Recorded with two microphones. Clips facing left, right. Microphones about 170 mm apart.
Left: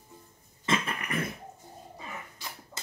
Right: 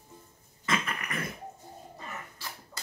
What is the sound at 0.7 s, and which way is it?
Cough, 25° left (ahead or behind).